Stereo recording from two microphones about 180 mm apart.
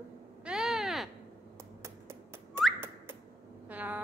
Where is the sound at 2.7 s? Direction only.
10° right (ahead or behind).